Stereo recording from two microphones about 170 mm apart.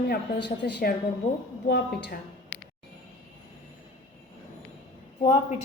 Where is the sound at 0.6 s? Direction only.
80° left.